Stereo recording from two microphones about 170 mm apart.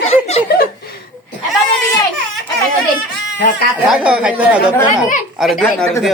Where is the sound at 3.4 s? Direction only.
70° left (ahead or behind).